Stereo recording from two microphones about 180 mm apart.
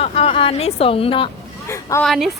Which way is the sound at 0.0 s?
30° left (ahead or behind).